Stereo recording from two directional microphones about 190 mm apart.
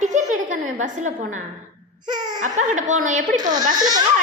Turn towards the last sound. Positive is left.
turn(degrees=-20)  # may be behind; listen again after turning